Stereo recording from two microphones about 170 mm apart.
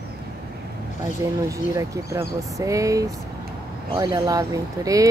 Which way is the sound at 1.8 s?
20° right (ahead or behind).